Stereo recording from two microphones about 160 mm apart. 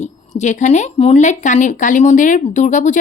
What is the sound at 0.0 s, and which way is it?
A woman's voice, 45° left (ahead or behind).